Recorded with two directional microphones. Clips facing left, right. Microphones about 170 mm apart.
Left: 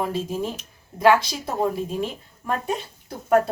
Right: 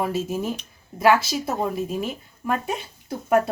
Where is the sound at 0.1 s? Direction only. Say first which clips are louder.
Right 1 dB; 10° right (ahead or behind).